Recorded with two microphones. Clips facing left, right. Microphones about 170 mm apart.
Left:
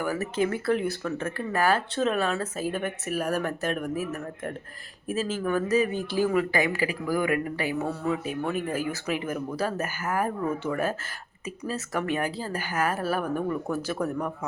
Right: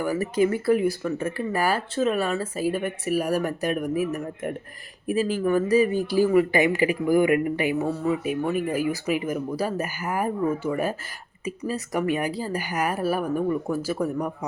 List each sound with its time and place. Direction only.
0.0 s speech: 10° right (ahead or behind)
7.9 s speech: 5° right (ahead or behind)